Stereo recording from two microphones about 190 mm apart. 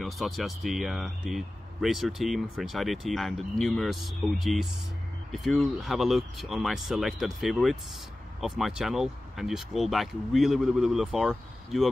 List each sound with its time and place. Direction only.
0.0 s speech: centre (ahead or behind)